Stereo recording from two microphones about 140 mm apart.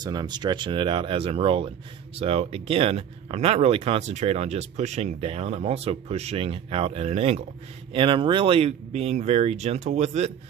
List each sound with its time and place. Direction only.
0.0 s speech: 30° right (ahead or behind); by 7.4 s 50° right (ahead or behind)
7.9 s speech: 35° right (ahead or behind); by 10.3 s 50° right (ahead or behind)